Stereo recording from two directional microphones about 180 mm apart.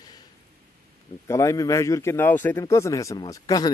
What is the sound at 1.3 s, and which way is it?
Speech, 15° left (ahead or behind).